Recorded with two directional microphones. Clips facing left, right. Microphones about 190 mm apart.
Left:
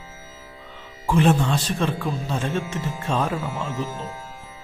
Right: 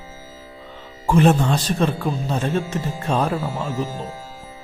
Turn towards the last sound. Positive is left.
turn(degrees=-35)  # may be behind; listen again after turning